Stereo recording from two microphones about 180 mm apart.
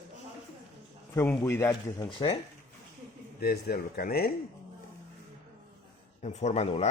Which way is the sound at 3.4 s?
60° left (ahead or behind).